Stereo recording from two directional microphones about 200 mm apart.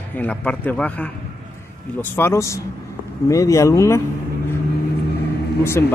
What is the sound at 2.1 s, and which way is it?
Speech, 15° left (ahead or behind).